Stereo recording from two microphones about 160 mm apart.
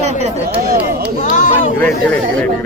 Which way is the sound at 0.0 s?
45° right (ahead or behind).